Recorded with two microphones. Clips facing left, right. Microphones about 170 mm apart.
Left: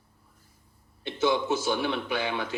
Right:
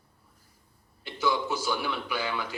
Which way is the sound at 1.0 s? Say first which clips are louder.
Left 3 dB; 25° left (ahead or behind).